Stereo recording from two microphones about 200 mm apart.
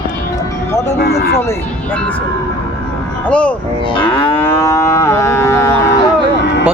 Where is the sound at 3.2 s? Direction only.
5° left (ahead or behind).